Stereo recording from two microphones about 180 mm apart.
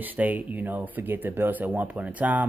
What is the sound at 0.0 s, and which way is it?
Speech, 10° right (ahead or behind).